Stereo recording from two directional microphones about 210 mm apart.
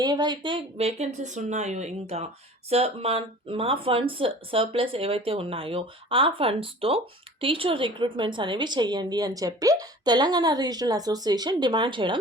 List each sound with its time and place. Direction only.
0.0 s a woman's voice: 20° right (ahead or behind)